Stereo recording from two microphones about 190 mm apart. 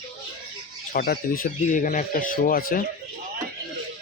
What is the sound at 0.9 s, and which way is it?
Speech, 50° left (ahead or behind).